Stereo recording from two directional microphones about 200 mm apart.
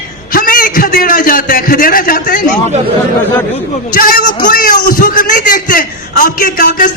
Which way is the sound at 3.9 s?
45° left (ahead or behind).